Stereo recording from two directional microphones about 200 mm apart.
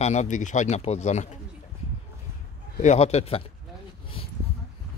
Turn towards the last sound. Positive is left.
turn(degrees=30)  # may be behind; listen again after turning